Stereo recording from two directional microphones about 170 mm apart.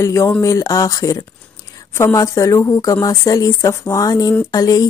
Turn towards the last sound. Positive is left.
turn(degrees=20)  # may be behind; listen again after turning